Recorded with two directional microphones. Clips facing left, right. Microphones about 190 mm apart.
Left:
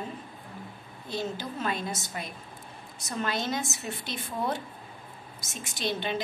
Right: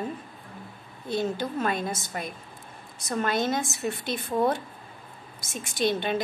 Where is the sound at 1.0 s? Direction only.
50° right (ahead or behind).